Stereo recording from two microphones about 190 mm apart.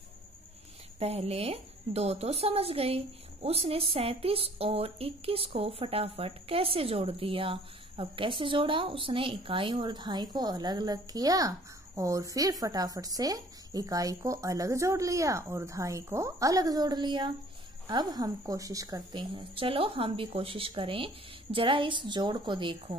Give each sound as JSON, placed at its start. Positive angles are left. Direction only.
{"t": 0.9, "sound": "speech", "side_deg": -35}